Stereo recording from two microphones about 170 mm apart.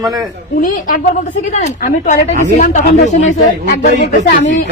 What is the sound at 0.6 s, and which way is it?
Speech, 50° left (ahead or behind).